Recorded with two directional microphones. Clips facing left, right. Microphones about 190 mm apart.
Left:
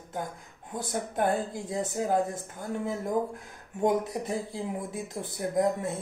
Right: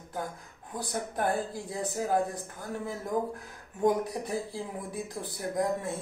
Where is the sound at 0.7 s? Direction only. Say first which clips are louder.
Left 3 dB; 20° left (ahead or behind).